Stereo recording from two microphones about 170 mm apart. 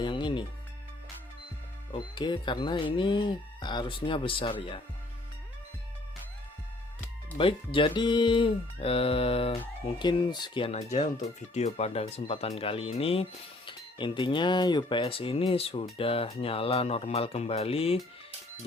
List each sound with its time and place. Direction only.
0.0 s music: 30° left (ahead or behind)
1.9 s speech: 30° left (ahead or behind)
7.3 s speech: 30° left (ahead or behind)